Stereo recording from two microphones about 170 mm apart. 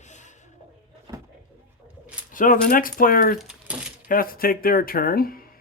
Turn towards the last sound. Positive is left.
turn(degrees=60)  # may be behind; listen again after turning